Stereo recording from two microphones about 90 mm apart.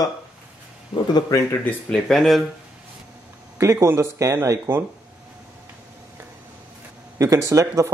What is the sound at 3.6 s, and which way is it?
Speech, 35° right (ahead or behind).